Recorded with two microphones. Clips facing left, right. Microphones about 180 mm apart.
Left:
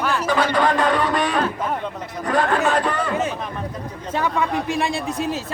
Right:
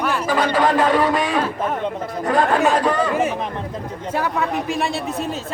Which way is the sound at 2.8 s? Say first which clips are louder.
Right 4 dB; 5° right (ahead or behind).